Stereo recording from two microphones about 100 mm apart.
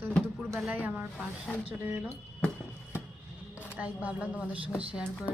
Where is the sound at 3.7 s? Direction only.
15° right (ahead or behind).